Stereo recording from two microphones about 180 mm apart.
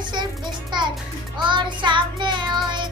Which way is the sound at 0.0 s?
25° right (ahead or behind).